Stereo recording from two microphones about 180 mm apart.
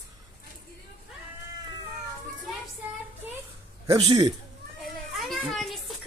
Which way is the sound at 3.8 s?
20° right (ahead or behind).